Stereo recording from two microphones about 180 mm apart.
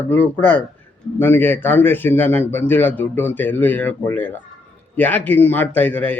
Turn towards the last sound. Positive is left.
turn(degrees=10)  # may be behind; listen again after turning